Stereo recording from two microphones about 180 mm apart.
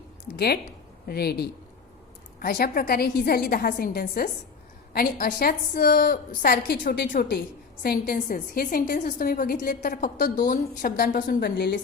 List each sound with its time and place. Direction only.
0.3 s a woman's voice: 60° left (ahead or behind)